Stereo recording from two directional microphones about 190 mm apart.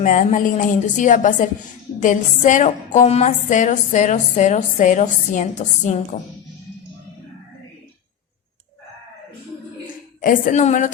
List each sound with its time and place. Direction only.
0.0 s a woman's voice: 40° left (ahead or behind)
10.2 s a woman's voice: 45° left (ahead or behind)